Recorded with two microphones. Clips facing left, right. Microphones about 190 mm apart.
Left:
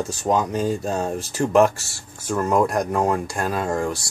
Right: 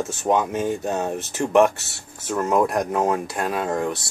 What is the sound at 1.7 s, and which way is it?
Speech, 20° right (ahead or behind).